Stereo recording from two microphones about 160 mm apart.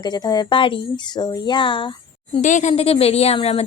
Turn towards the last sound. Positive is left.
turn(degrees=35)  # may be behind; listen again after turning